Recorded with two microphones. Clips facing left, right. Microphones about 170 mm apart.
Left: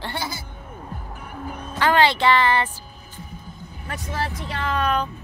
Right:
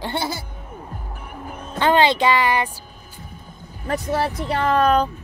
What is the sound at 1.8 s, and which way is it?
Speech, 20° right (ahead or behind).